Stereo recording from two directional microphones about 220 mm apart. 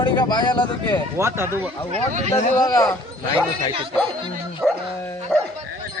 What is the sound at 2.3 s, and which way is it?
Speech, 20° left (ahead or behind).